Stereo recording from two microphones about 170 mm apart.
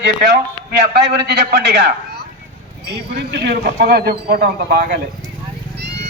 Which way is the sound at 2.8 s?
70° right (ahead or behind).